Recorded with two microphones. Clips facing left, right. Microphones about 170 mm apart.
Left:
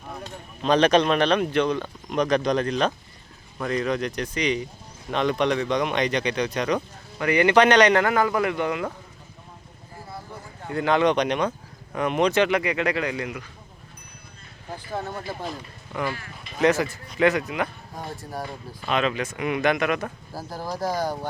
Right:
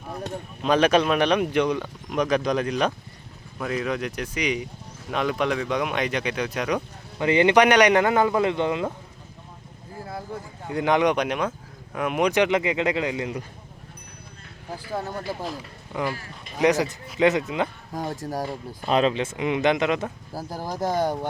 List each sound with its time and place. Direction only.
0.6 s speech: 5° right (ahead or behind)
7.2 s speech: 20° right (ahead or behind)
10.7 s speech: 15° right (ahead or behind)
15.3 s speech: 5° right (ahead or behind)
16.6 s speech: 15° right (ahead or behind)
17.9 s speech: 40° right (ahead or behind); by 21.2 s 25° right (ahead or behind)